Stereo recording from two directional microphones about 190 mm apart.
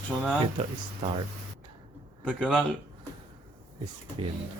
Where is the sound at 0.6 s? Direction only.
30° right (ahead or behind).